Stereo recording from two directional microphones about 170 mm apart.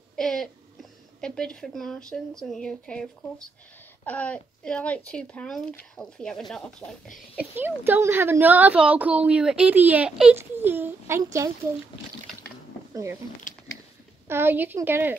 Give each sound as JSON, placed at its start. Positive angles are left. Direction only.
{"t": 0.1, "sound": "a sound", "side_deg": 5}
{"t": 1.2, "sound": "speech", "side_deg": 5}
{"t": 7.3, "sound": "a woman's voice", "side_deg": -10}
{"t": 12.9, "sound": "speech", "side_deg": -15}
{"t": 14.2, "sound": "a woman's voice", "side_deg": -15}